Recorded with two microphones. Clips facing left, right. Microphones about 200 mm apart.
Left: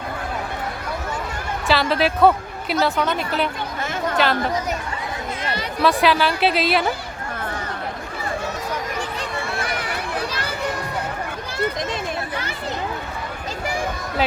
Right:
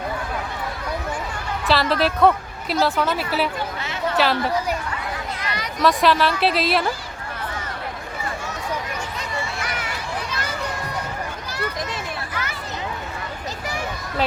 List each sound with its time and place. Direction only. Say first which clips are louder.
1.6 s a woman's voice: even; centre (ahead or behind)
5.4 s a sound: left 3 dB; 30° left (ahead or behind)
5.8 s a woman's voice: even; centre (ahead or behind)